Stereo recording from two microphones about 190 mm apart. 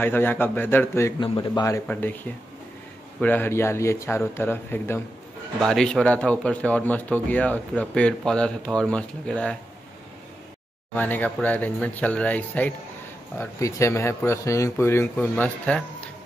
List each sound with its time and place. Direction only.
0.0 s a man's voice: 10° left (ahead or behind)
1.9 s a man's voice: 10° left (ahead or behind)
3.2 s a man's voice: 10° left (ahead or behind)
11.0 s a man's voice: 10° left (ahead or behind)